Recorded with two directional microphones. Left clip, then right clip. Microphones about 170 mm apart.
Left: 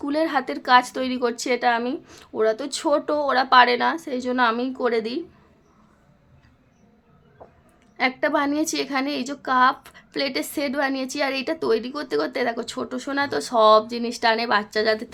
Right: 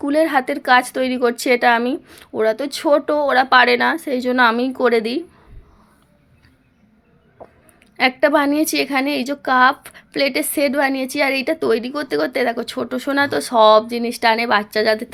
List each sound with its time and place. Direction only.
0.0 s speech: 15° right (ahead or behind)
2.0 s a woman's voice: 15° right (ahead or behind)
7.9 s a woman's voice: 25° right (ahead or behind)